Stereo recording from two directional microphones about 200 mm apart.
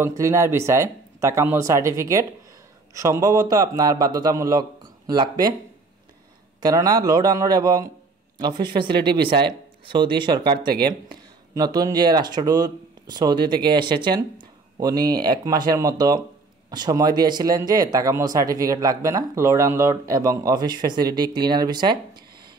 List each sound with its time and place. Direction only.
0.0 s speech: 15° right (ahead or behind)
6.6 s speech: 20° right (ahead or behind)